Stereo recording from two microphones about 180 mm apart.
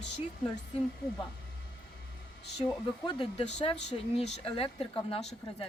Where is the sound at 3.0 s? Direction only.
30° left (ahead or behind).